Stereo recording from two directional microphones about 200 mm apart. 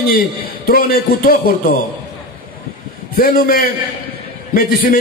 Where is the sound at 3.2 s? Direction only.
45° left (ahead or behind).